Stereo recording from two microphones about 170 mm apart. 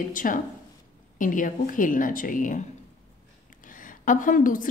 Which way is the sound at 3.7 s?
50° left (ahead or behind).